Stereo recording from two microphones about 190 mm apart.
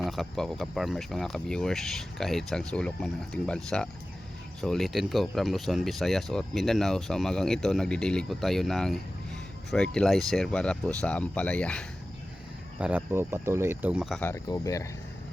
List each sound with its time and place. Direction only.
0.0 s speech: centre (ahead or behind)
12.8 s speech: 10° right (ahead or behind)
14.2 s speech: 15° left (ahead or behind)